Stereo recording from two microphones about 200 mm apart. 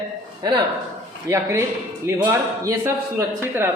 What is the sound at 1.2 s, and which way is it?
A man's voice, 15° right (ahead or behind).